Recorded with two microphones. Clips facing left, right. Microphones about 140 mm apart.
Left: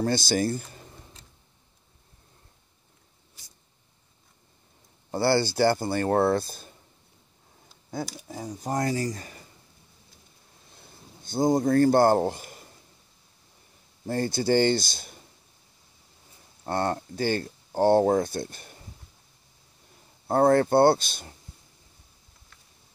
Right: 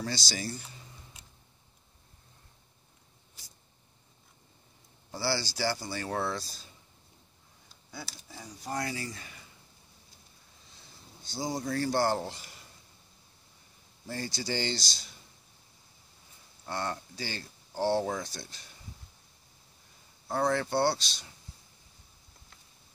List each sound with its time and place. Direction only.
0.0 s speech: 55° left (ahead or behind)
5.1 s speech: 55° left (ahead or behind)
7.9 s speech: 50° left (ahead or behind)
10.7 s a sound: 55° left (ahead or behind)
14.0 s speech: 50° left (ahead or behind)
16.6 s speech: 50° left (ahead or behind)
20.2 s speech: 50° left (ahead or behind)